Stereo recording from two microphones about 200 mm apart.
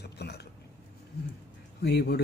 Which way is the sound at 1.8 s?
55° left (ahead or behind).